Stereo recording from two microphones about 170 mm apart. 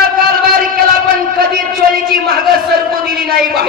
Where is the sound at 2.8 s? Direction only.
60° right (ahead or behind).